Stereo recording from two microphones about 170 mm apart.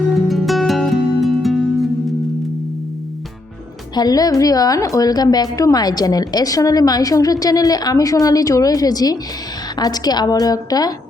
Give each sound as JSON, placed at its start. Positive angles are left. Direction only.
{"t": 0.3, "sound": "music", "side_deg": 0}
{"t": 3.9, "sound": "a woman's voice", "side_deg": 20}